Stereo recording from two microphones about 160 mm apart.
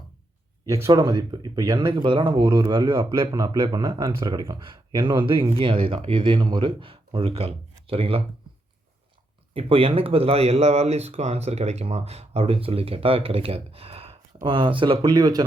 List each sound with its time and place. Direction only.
0.6 s speech: 20° right (ahead or behind); by 8.2 s 35° right (ahead or behind)
9.6 s speech: 35° right (ahead or behind)